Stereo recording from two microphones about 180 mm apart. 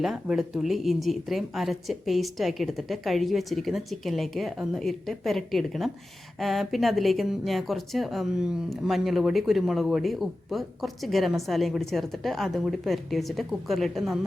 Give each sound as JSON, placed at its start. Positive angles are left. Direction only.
{"t": 0.0, "sound": "speech", "side_deg": 0}